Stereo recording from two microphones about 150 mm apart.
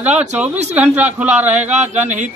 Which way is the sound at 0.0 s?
10° right (ahead or behind).